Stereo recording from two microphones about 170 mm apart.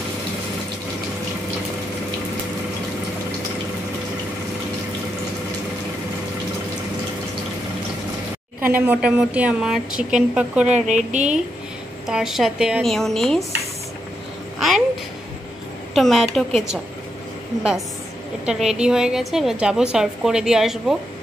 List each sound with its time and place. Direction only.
8.6 s speech: 10° right (ahead or behind)
10.7 s speech: 45° right (ahead or behind)
12.1 s a woman's voice: 5° right (ahead or behind)
15.9 s a woman's voice: centre (ahead or behind)
18.4 s a woman's voice: 5° right (ahead or behind)